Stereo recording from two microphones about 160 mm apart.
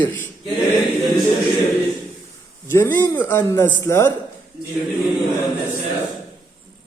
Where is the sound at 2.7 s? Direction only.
15° left (ahead or behind).